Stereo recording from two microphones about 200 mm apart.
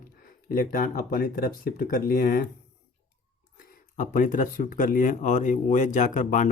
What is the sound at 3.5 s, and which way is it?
Speech, 45° left (ahead or behind).